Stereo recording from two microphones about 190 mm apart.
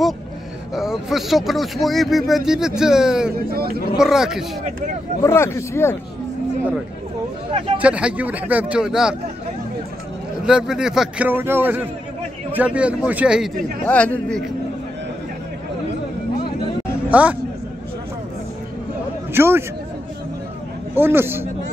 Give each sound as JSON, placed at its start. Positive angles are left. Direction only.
{"t": 0.7, "sound": "speech", "side_deg": 0}
{"t": 3.5, "sound": "speech", "side_deg": -50}
{"t": 3.9, "sound": "speech", "side_deg": -5}
{"t": 5.2, "sound": "speech", "side_deg": 15}
{"t": 7.8, "sound": "a man's voice", "side_deg": -5}
{"t": 10.4, "sound": "a man's voice", "side_deg": -5}
{"t": 13.8, "sound": "speech", "side_deg": 5}
{"t": 17.1, "sound": "a man's voice", "side_deg": -10}
{"t": 19.3, "sound": "a man's voice", "side_deg": -15}
{"t": 20.9, "sound": "a man's voice", "side_deg": -10}